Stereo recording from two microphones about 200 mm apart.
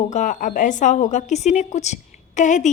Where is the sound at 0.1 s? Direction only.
40° left (ahead or behind).